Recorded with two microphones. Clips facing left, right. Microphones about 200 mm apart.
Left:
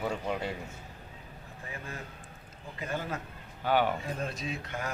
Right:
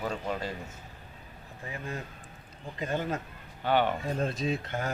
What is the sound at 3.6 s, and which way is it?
Speech, 10° left (ahead or behind).